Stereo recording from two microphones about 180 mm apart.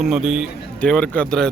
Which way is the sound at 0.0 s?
Centre (ahead or behind).